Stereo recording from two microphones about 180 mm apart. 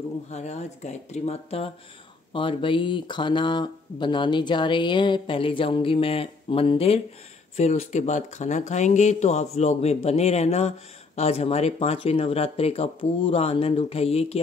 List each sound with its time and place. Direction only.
0.3 s speech: 40° left (ahead or behind)